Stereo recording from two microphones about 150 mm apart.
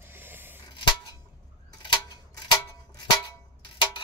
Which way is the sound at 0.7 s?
30° left (ahead or behind).